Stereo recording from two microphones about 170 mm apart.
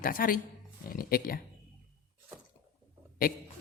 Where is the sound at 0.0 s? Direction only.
55° left (ahead or behind).